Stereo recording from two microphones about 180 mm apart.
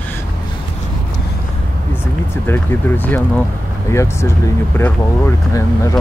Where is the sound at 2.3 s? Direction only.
10° left (ahead or behind).